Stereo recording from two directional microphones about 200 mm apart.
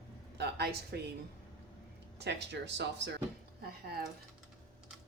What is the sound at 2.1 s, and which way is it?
Speech, 55° right (ahead or behind).